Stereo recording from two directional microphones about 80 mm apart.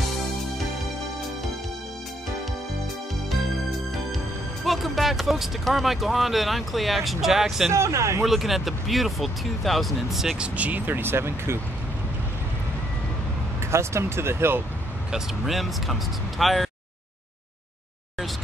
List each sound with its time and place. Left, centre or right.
4.6 s speech: centre
7.7 s speech: right
8.2 s speech: centre
10.4 s speech: centre
13.7 s speech: right
15.0 s speech: centre